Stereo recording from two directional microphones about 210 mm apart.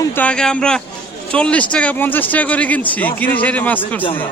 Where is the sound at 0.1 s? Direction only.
5° left (ahead or behind).